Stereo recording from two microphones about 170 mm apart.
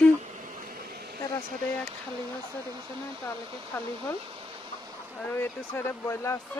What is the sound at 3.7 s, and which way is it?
Speech, 15° left (ahead or behind).